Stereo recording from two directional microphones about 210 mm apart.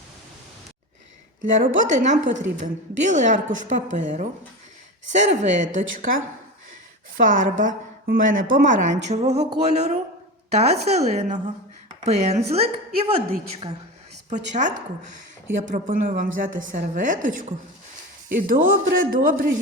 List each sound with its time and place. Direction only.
1.4 s a woman's voice: 35° right (ahead or behind)
7.3 s a woman's voice: 35° right (ahead or behind)
14.3 s a woman's voice: 35° right (ahead or behind)
15.7 s a woman's voice: 40° right (ahead or behind)